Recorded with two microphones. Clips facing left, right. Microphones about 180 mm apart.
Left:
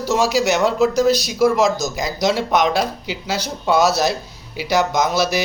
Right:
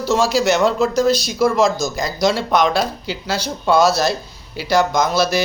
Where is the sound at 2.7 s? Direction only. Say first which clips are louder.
Even; 15° left (ahead or behind).